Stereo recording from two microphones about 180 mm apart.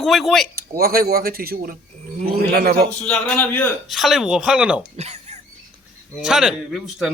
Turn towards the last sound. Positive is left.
turn(degrees=-5)  # may be behind; listen again after turning